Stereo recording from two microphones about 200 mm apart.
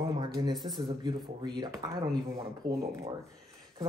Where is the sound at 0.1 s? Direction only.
20° right (ahead or behind).